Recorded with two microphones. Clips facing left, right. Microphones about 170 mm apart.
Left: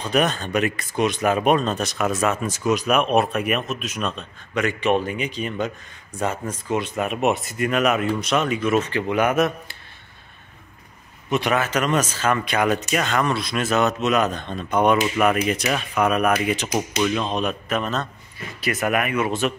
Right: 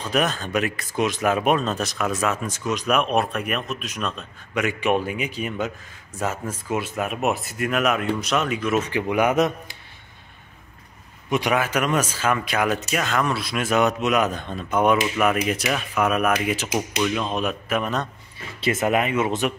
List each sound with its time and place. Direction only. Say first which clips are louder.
0.1 s speech: left 2 dB; centre (ahead or behind)
8.8 s speech: even; 10° right (ahead or behind)
11.2 s speech: even; 10° right (ahead or behind)
18.6 s speech: right 1 dB; 25° right (ahead or behind)